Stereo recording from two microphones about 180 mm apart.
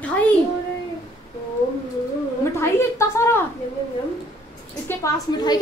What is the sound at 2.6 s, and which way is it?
Speech, 15° left (ahead or behind).